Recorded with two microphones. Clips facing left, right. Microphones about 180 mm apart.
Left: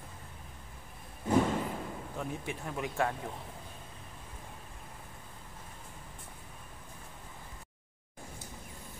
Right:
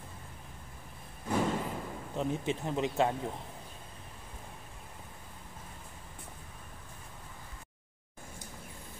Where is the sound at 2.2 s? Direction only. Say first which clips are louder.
Right 7 dB; 20° right (ahead or behind).